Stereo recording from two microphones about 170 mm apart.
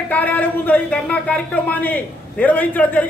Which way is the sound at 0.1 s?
10° left (ahead or behind).